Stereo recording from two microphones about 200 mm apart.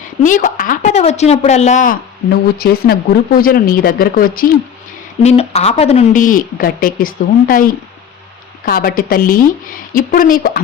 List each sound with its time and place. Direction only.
0.2 s a woman's voice: 40° left (ahead or behind)
5.2 s speech: 30° left (ahead or behind)
8.6 s a woman's voice: 45° left (ahead or behind)